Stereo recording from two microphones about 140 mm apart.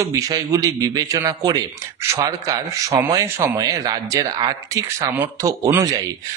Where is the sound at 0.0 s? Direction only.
25° right (ahead or behind).